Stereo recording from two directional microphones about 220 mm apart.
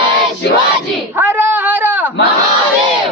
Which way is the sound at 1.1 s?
10° right (ahead or behind).